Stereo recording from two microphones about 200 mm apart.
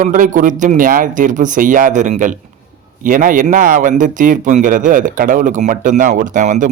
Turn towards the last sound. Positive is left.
turn(degrees=-40)  # may be behind; listen again after turning